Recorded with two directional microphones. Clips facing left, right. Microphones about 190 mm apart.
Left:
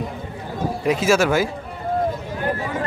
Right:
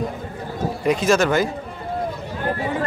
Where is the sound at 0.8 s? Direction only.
5° left (ahead or behind).